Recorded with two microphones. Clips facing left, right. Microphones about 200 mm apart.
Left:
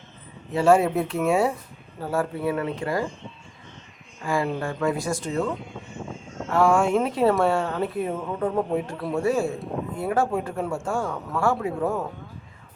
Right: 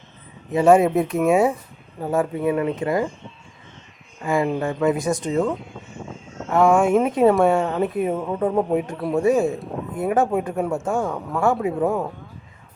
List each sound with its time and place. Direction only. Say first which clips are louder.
0.5 s speech: right 4 dB; 15° right (ahead or behind)
4.2 s speech: right 4 dB; 20° right (ahead or behind)
5.5 s vehicle: right 4 dB; centre (ahead or behind)
6.5 s speech: right 4 dB; 20° right (ahead or behind)
9.0 s a man's voice: right 5 dB; centre (ahead or behind)
9.2 s speech: right 5 dB; 20° right (ahead or behind)
9.6 s speech: even; centre (ahead or behind)
9.9 s speech: right 4 dB; 20° right (ahead or behind)